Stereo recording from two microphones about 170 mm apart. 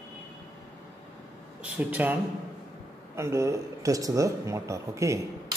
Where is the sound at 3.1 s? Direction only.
15° right (ahead or behind).